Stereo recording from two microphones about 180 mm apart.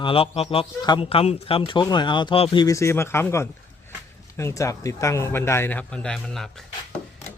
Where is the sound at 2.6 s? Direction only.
15° left (ahead or behind).